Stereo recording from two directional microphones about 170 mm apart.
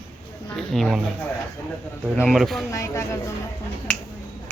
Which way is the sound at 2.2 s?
Centre (ahead or behind).